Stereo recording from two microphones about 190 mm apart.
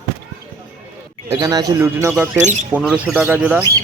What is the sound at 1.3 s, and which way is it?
A man's voice, 20° right (ahead or behind).